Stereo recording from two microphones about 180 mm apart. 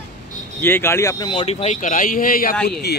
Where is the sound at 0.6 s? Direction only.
15° left (ahead or behind); by 2.6 s 50° left (ahead or behind).